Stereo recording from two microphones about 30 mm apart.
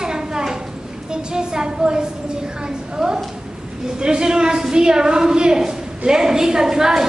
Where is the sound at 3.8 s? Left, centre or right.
Right.